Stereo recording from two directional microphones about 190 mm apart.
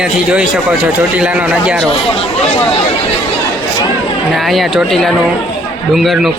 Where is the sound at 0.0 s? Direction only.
5° right (ahead or behind).